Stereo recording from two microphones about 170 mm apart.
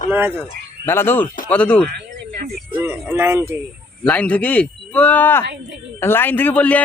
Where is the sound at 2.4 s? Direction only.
60° right (ahead or behind).